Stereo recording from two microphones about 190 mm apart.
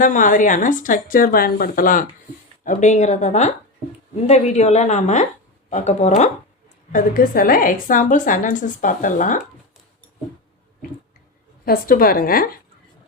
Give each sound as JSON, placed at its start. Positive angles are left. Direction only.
{"t": 0.0, "sound": "a woman's voice", "side_deg": 45}
{"t": 6.9, "sound": "a woman's voice", "side_deg": 45}
{"t": 11.6, "sound": "a woman's voice", "side_deg": 50}